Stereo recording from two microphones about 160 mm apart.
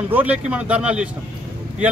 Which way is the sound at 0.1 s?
10° right (ahead or behind).